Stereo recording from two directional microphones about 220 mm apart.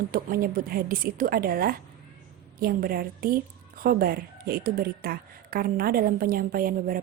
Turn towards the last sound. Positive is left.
turn(degrees=-40)  # may be behind; listen again after turning